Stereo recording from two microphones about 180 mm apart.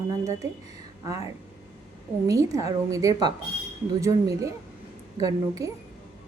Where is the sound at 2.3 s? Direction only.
20° right (ahead or behind).